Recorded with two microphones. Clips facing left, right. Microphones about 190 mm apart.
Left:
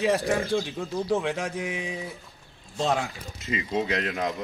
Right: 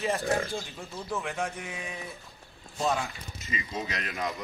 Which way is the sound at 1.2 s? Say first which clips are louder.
Left 5 dB; 90° left.